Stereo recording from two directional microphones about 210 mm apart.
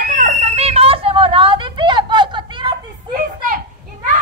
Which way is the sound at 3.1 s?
40° right (ahead or behind).